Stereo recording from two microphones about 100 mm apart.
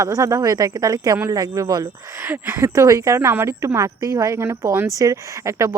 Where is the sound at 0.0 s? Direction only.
30° right (ahead or behind).